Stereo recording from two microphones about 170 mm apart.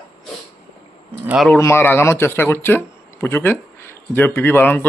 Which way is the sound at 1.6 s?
15° left (ahead or behind).